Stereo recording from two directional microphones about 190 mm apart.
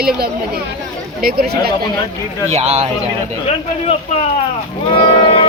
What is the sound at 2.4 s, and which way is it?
Speech, 35° right (ahead or behind).